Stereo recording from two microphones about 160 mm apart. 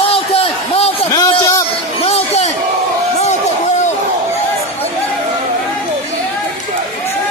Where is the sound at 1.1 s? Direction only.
20° left (ahead or behind).